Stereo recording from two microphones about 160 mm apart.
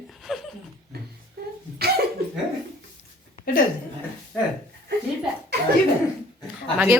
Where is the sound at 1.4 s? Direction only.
80° right.